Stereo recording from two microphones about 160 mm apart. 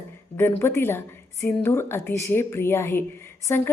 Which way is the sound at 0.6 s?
15° left (ahead or behind).